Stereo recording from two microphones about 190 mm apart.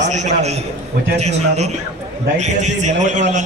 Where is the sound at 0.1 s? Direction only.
40° right (ahead or behind).